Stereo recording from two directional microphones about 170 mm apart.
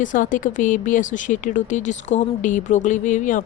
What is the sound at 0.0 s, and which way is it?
Speech, 50° left (ahead or behind).